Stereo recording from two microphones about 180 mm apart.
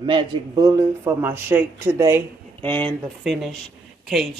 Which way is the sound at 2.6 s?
10° left (ahead or behind).